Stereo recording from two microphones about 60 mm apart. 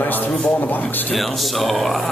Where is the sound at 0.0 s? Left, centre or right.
Left.